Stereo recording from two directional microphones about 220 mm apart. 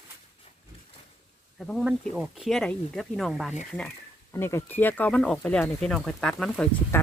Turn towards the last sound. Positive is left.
turn(degrees=5)  # may be behind; listen again after turning